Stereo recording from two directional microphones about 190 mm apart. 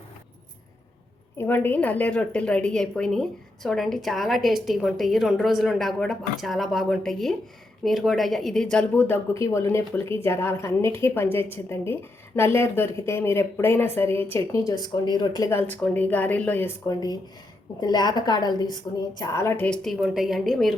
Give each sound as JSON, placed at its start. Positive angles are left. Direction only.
{"t": 1.4, "sound": "a woman's voice", "side_deg": 10}